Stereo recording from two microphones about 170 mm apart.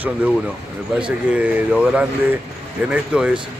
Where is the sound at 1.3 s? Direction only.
10° right (ahead or behind).